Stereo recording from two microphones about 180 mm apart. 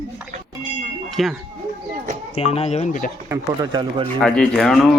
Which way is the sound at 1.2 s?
Centre (ahead or behind).